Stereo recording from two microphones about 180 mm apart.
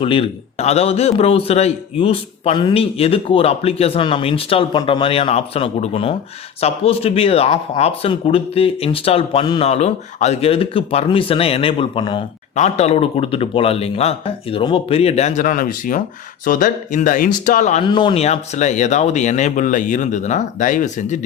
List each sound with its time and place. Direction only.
0.0 s a man's voice: 30° left (ahead or behind)
12.5 s a man's voice: 35° left (ahead or behind)
17.8 s a man's voice: 25° left (ahead or behind); by 21.2 s 45° left (ahead or behind)